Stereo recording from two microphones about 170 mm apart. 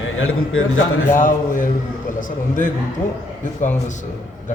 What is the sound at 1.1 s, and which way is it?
Speech, 50° left (ahead or behind).